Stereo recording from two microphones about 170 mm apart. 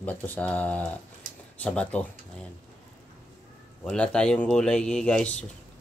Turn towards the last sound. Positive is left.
turn(degrees=5)  # may be behind; listen again after turning